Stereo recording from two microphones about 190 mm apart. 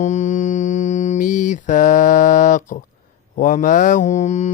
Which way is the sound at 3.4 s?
45° left (ahead or behind).